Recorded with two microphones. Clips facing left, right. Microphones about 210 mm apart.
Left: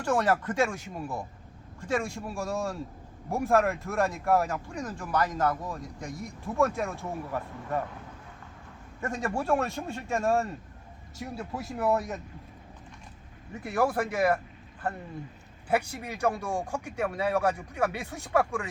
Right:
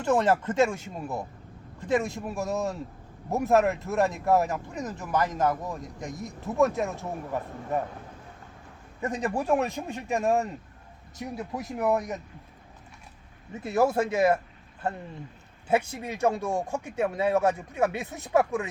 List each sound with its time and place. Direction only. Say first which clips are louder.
0.0 s speech: right 3 dB; 20° right (ahead or behind)
9.0 s a man's voice: right 2 dB; 20° right (ahead or behind)
13.5 s speech: right 3 dB; 20° right (ahead or behind)